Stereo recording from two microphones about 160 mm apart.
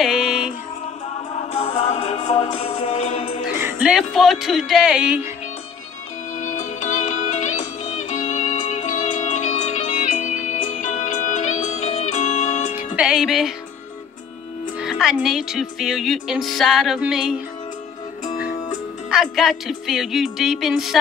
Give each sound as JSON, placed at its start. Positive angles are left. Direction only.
{"t": 0.0, "sound": "music", "side_deg": 0}
{"t": 1.5, "sound": "music", "side_deg": 45}
{"t": 3.6, "sound": "speech", "side_deg": -5}
{"t": 6.3, "sound": "music", "side_deg": 50}
{"t": 12.9, "sound": "music", "side_deg": -5}
{"t": 14.8, "sound": "speech", "side_deg": 0}
{"t": 18.2, "sound": "music", "side_deg": 50}
{"t": 19.0, "sound": "speech", "side_deg": 0}